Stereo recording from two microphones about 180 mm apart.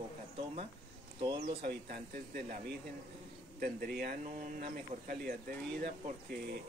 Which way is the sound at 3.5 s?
55° right (ahead or behind).